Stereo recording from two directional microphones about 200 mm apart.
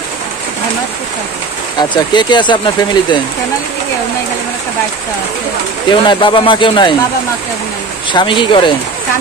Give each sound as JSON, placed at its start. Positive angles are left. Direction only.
{"t": 1.8, "sound": "speech", "side_deg": 20}
{"t": 5.9, "sound": "speech", "side_deg": 25}
{"t": 8.1, "sound": "speech", "side_deg": 25}